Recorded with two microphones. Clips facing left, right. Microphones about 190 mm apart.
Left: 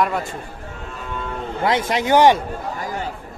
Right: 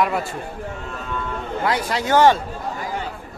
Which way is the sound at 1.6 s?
25° left (ahead or behind).